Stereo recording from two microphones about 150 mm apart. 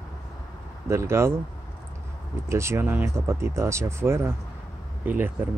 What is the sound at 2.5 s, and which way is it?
Speech, 20° right (ahead or behind).